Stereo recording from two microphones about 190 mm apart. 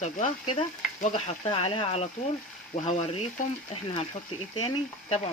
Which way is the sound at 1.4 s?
30° left (ahead or behind).